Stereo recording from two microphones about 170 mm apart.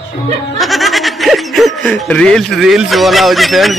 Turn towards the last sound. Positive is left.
turn(degrees=0)  # may be behind; listen again after turning